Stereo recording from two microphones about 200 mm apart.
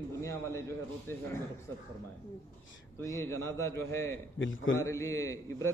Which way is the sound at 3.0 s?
15° left (ahead or behind).